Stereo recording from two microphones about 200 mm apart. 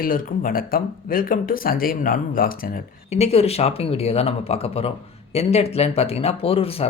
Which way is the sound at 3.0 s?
30° left (ahead or behind).